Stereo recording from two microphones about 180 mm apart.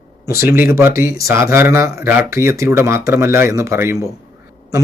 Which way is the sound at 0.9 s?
55° left (ahead or behind).